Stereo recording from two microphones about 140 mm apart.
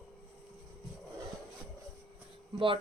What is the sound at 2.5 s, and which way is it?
Speech, 40° right (ahead or behind).